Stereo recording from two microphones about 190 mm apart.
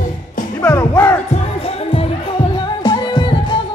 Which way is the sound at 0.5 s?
10° left (ahead or behind).